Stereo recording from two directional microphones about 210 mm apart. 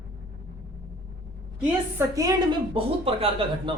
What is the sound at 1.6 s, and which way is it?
A woman's voice, 10° right (ahead or behind).